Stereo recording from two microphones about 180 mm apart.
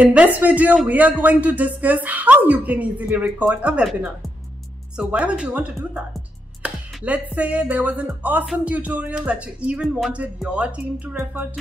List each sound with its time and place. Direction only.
0.0 s a man's voice: 10° right (ahead or behind)